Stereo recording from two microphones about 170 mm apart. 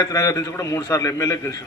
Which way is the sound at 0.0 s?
20° left (ahead or behind).